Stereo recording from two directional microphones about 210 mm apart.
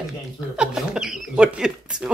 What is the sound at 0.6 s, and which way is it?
Chuckle, 5° right (ahead or behind).